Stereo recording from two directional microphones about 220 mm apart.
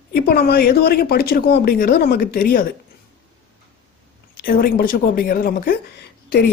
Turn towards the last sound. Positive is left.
turn(degrees=45)  # may be behind; listen again after turning